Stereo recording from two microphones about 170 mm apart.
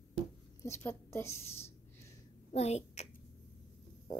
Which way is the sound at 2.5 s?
40° left (ahead or behind).